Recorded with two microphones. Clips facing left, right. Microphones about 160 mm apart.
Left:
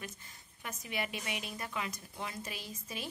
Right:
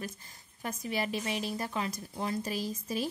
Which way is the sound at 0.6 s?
35° right (ahead or behind).